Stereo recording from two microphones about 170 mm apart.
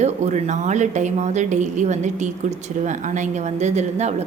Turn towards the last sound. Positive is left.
turn(degrees=-40)  # may be behind; listen again after turning